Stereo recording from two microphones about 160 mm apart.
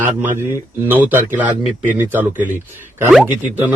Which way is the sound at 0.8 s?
10° right (ahead or behind).